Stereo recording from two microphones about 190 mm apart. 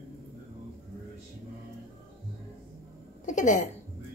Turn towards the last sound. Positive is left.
turn(degrees=40)  # may be behind; listen again after turning